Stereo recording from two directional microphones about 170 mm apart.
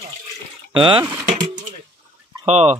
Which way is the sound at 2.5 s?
40° right (ahead or behind).